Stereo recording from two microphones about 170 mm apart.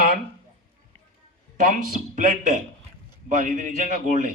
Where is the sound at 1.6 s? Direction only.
50° right (ahead or behind).